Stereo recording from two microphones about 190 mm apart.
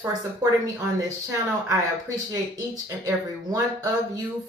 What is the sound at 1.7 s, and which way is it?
Speech, 15° right (ahead or behind).